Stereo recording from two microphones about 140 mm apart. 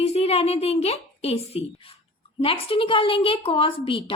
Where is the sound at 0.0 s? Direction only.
45° left (ahead or behind).